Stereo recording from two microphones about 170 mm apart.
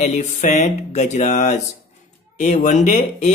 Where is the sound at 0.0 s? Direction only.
45° left (ahead or behind).